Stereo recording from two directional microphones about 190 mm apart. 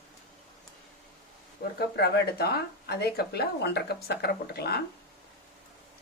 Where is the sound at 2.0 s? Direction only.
60° left (ahead or behind).